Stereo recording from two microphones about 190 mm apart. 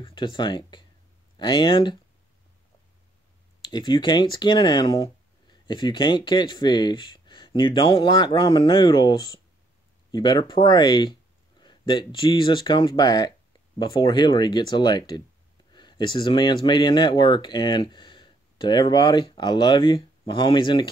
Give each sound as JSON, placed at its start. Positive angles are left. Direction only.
{"t": 0.0, "sound": "speech", "side_deg": 25}
{"t": 3.6, "sound": "speech", "side_deg": 25}